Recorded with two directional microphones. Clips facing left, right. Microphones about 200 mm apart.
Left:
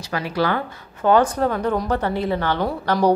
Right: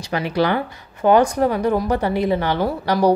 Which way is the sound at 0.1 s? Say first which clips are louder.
Right 3 dB; 20° right (ahead or behind).